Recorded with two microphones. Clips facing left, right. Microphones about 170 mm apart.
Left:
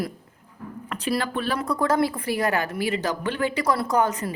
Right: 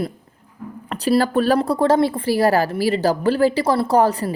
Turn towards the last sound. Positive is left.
turn(degrees=-35)  # may be behind; listen again after turning